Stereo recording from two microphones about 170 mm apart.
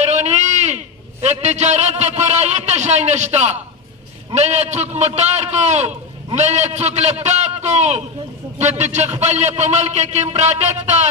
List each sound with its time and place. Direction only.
0.0 s a man's voice: 40° right (ahead or behind)